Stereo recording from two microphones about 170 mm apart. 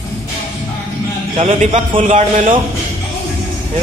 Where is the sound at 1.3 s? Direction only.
40° right (ahead or behind).